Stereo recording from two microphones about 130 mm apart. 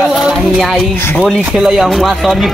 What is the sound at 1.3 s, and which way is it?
Speech, 5° right (ahead or behind).